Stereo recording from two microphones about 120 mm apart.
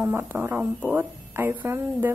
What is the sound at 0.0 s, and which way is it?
A woman's voice, 20° right (ahead or behind).